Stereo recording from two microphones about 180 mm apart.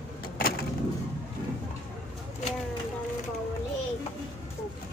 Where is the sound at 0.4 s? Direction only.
55° left (ahead or behind).